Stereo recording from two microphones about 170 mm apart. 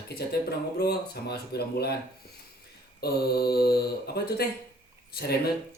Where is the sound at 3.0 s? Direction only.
65° left (ahead or behind).